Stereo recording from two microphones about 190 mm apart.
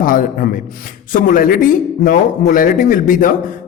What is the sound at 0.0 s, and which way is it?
A woman's voice, 45° left (ahead or behind).